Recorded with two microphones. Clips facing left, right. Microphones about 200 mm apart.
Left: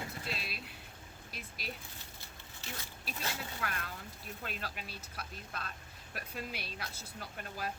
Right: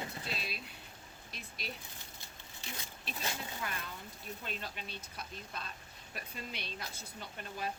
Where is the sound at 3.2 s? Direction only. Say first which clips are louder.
Even; 15° right (ahead or behind).